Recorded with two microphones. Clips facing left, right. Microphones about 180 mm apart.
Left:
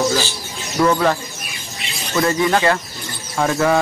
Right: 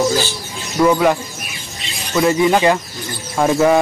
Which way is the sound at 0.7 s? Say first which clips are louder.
Right 3 dB; 10° right (ahead or behind).